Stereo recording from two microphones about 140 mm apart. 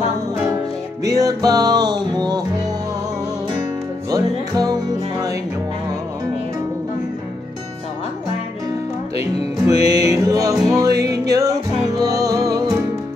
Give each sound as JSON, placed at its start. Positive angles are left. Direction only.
{"t": 1.0, "sound": "music", "side_deg": -25}
{"t": 4.1, "sound": "music", "side_deg": -30}
{"t": 9.7, "sound": "music", "side_deg": -25}